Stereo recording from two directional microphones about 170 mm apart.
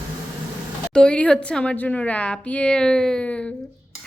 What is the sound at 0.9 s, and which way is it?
A woman's voice, 5° left (ahead or behind).